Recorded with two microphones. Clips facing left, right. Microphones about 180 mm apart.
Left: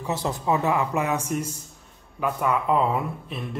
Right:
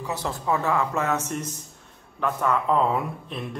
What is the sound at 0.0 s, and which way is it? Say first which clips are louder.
A man's voice: left 2 dB; 20° left (ahead or behind).